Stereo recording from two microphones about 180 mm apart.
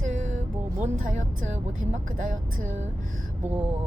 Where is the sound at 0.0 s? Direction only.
40° right (ahead or behind).